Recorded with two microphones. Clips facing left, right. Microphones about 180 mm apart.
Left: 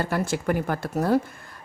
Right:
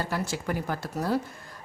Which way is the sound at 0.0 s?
55° left (ahead or behind).